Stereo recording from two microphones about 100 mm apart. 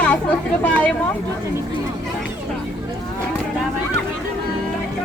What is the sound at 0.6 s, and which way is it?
Speech, 15° left (ahead or behind).